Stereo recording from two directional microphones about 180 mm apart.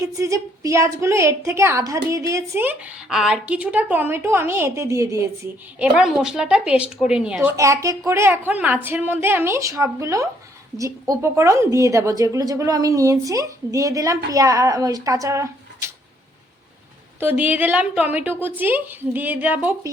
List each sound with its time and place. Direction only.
0.0 s a woman's voice: 15° right (ahead or behind)
6.0 s a woman's voice: centre (ahead or behind)
7.5 s a woman's voice: 15° right (ahead or behind)
17.2 s a woman's voice: 10° right (ahead or behind)